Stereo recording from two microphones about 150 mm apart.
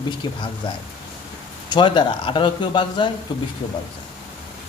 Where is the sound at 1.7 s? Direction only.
30° left (ahead or behind).